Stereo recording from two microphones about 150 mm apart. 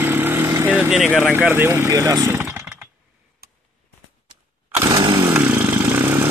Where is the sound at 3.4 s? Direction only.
90° right.